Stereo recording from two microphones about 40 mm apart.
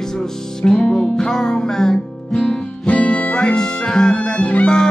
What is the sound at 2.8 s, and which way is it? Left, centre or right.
Music, left.